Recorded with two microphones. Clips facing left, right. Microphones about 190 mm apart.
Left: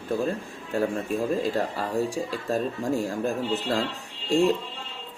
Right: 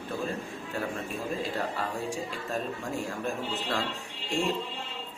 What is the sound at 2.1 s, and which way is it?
A man's voice, 35° left (ahead or behind).